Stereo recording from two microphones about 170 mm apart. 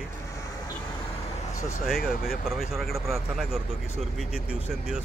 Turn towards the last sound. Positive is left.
turn(degrees=0)  # may be behind; listen again after turning